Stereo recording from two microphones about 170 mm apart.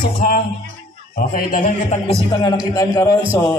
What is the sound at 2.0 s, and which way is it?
A man's voice, 25° left (ahead or behind).